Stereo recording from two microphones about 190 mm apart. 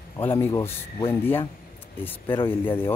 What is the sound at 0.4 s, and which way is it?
Speech, 15° left (ahead or behind).